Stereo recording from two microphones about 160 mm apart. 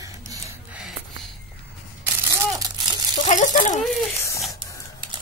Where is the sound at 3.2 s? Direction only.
50° left (ahead or behind).